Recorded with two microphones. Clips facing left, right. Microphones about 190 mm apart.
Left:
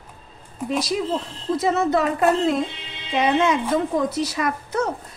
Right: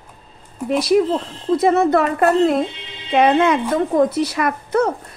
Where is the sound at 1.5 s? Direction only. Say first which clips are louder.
Right 5 dB; 55° right (ahead or behind).